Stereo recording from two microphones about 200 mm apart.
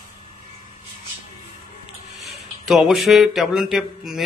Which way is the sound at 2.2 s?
Centre (ahead or behind).